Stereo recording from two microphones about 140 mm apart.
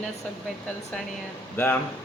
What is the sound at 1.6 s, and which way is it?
Speech, 15° left (ahead or behind).